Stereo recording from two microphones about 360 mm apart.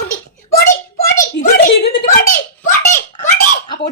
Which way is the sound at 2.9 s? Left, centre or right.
Left.